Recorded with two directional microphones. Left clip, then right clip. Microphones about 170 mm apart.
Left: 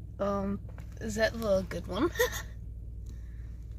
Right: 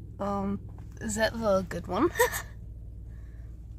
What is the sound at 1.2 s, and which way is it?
Speech, 15° right (ahead or behind).